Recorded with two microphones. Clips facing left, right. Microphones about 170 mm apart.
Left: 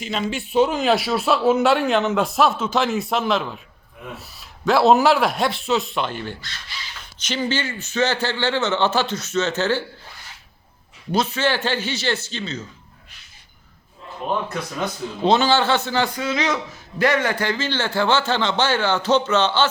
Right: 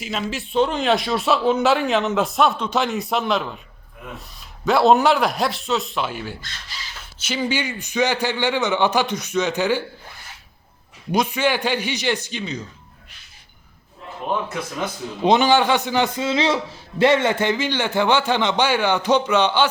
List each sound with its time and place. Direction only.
0.0 s a man's voice: centre (ahead or behind)
11.1 s a man's voice: 15° right (ahead or behind)
14.3 s a man's voice: 5° right (ahead or behind)